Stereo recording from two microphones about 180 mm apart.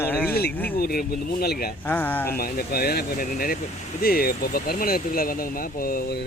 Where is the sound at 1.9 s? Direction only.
10° left (ahead or behind).